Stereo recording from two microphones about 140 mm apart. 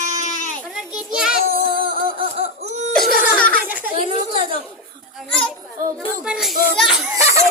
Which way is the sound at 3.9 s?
40° right (ahead or behind).